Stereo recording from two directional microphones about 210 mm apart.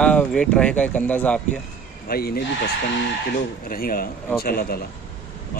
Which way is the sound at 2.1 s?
45° left (ahead or behind).